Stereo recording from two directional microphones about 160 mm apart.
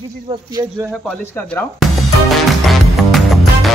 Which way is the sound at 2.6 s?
Centre (ahead or behind).